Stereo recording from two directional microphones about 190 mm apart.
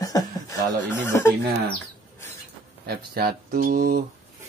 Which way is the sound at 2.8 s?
55° right (ahead or behind).